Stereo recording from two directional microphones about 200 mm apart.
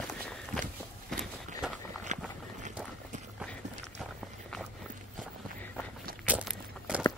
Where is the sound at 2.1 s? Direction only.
35° right (ahead or behind).